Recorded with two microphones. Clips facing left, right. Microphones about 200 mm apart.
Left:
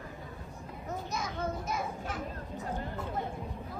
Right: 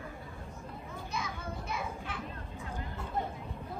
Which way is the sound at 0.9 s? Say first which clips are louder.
Left 4 dB; 45° left (ahead or behind).